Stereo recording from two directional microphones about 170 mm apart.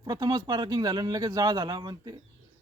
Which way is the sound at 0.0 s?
20° right (ahead or behind).